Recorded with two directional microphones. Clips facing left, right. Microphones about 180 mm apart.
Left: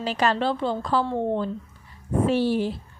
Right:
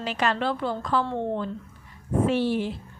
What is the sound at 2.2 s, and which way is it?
Speech, 35° left (ahead or behind).